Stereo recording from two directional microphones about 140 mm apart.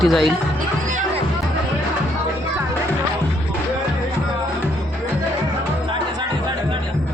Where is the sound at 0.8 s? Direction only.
65° right (ahead or behind).